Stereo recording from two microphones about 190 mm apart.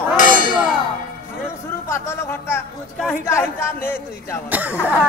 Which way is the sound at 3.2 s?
15° left (ahead or behind).